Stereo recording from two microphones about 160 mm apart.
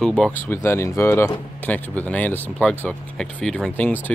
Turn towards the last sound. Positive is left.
turn(degrees=10)  # may be behind; listen again after turning